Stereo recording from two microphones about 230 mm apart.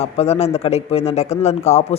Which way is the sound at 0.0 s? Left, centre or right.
Left.